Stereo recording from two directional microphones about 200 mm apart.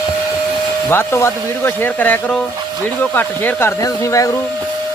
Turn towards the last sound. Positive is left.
turn(degrees=15)  # may be behind; listen again after turning